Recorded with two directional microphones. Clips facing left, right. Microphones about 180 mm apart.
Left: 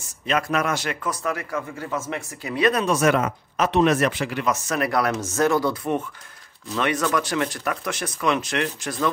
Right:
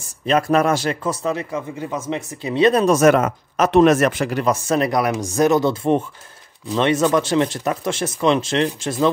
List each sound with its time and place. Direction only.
0.3 s a man's voice: 35° right (ahead or behind)
2.8 s speech: 45° right (ahead or behind)
4.6 s a man's voice: 25° right (ahead or behind)